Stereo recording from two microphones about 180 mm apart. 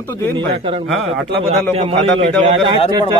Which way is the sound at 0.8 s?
Centre (ahead or behind).